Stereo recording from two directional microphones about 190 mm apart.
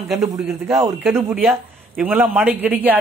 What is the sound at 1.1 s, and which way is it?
A man's voice, 10° right (ahead or behind).